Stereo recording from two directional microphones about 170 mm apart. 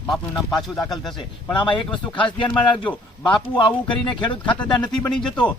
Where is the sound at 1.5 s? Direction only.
30° left (ahead or behind).